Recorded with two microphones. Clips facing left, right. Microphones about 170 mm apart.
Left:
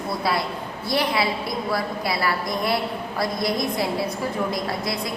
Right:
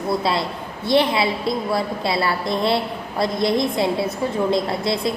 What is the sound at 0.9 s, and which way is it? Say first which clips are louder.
A woman's voice: right 5 dB; 25° right (ahead or behind).